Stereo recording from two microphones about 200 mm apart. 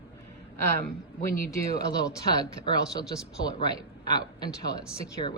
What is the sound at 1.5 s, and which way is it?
Speech, 20° left (ahead or behind).